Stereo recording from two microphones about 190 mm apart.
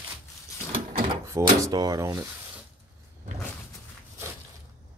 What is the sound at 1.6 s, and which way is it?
Speech, 20° right (ahead or behind).